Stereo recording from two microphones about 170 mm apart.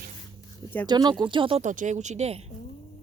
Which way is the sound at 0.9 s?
25° right (ahead or behind).